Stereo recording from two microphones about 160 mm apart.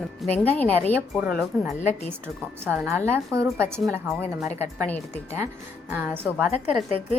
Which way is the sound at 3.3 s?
20° right (ahead or behind).